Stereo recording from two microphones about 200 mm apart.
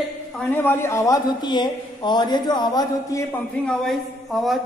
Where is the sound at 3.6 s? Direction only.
Centre (ahead or behind).